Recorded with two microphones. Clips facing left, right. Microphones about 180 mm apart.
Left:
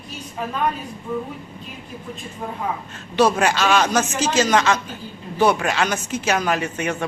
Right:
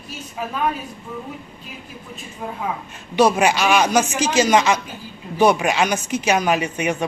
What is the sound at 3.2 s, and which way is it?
Speech, 15° right (ahead or behind).